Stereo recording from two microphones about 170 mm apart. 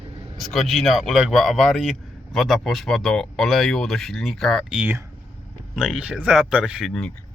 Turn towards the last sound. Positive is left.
turn(degrees=0)  # may be behind; listen again after turning